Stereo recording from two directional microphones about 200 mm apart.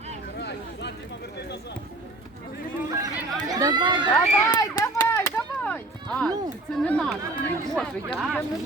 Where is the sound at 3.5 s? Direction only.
20° right (ahead or behind).